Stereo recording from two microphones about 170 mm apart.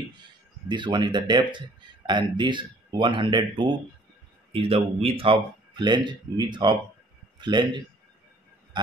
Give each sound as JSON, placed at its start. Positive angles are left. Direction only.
{"t": 0.7, "sound": "a man's voice", "side_deg": -25}